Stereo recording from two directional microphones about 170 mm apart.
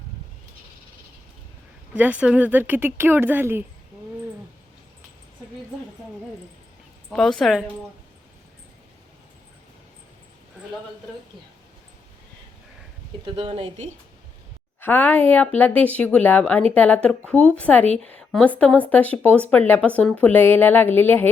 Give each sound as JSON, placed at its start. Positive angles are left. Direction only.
{"t": 2.0, "sound": "speech", "side_deg": -10}
{"t": 7.1, "sound": "a woman's voice", "side_deg": 5}
{"t": 13.3, "sound": "a woman's voice", "side_deg": -30}
{"t": 14.8, "sound": "speech", "side_deg": 10}